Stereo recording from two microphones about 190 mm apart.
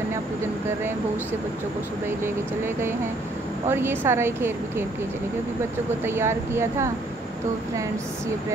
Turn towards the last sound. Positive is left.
turn(degrees=-15)  # may be behind; listen again after turning